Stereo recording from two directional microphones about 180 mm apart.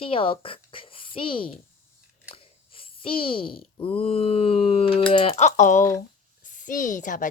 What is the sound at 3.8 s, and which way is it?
A child's voice, 30° left (ahead or behind).